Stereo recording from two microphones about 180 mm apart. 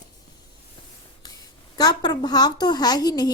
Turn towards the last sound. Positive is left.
turn(degrees=20)  # may be behind; listen again after turning